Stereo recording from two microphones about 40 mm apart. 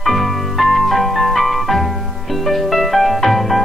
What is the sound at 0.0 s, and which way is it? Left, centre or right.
Music, centre.